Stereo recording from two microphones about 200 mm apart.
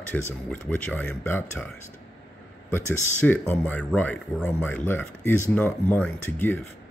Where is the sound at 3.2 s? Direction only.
10° left (ahead or behind).